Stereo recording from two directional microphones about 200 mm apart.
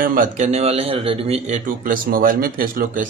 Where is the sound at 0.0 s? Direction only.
40° right (ahead or behind).